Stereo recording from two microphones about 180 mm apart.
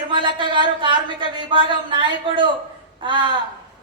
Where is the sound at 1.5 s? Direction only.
25° right (ahead or behind).